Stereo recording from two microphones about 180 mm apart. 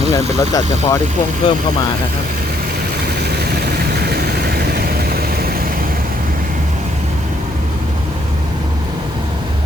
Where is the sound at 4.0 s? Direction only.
60° right (ahead or behind).